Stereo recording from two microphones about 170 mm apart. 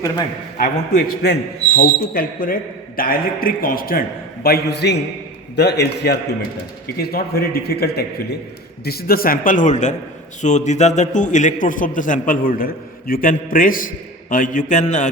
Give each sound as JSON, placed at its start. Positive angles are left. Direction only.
{"t": 0.5, "sound": "a man's voice", "side_deg": 55}
{"t": 4.4, "sound": "a man's voice", "side_deg": 70}
{"t": 6.8, "sound": "a man's voice", "side_deg": 60}